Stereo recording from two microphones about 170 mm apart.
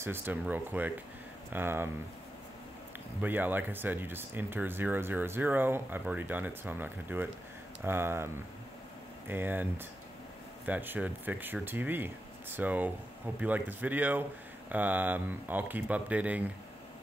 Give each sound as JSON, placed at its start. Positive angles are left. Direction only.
{"t": 0.0, "sound": "speech", "side_deg": -10}
{"t": 3.2, "sound": "speech", "side_deg": -10}
{"t": 9.3, "sound": "speech", "side_deg": -10}